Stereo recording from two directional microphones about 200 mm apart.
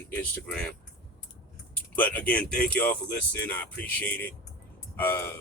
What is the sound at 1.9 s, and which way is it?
Speech, 10° left (ahead or behind).